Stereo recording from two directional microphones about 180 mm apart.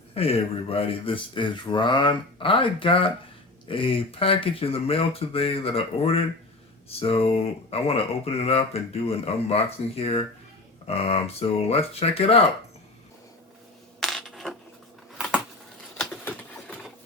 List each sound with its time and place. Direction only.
0.1 s speech: 35° left (ahead or behind)
14.0 s coin: centre (ahead or behind)